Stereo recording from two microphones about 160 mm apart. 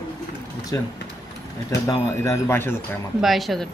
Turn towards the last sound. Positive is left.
turn(degrees=0)  # may be behind; listen again after turning